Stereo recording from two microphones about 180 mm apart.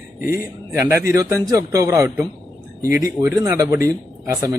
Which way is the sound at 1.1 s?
20° right (ahead or behind).